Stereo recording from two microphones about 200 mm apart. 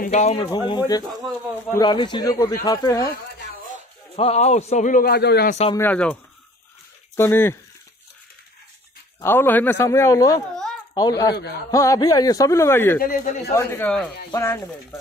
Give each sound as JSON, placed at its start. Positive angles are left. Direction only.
{"t": 0.0, "sound": "a man's voice", "side_deg": 35}
{"t": 0.5, "sound": "speech", "side_deg": 20}
{"t": 4.2, "sound": "a man's voice", "side_deg": 35}
{"t": 5.5, "sound": "a man's voice", "side_deg": 30}
{"t": 5.8, "sound": "speech", "side_deg": 10}
{"t": 7.2, "sound": "speech", "side_deg": 10}
{"t": 9.2, "sound": "speech", "side_deg": 10}
{"t": 10.5, "sound": "a sound", "side_deg": 5}
{"t": 11.0, "sound": "speech", "side_deg": 20}
{"t": 13.0, "sound": "a man's voice", "side_deg": 40}
{"t": 13.6, "sound": "speech", "side_deg": 10}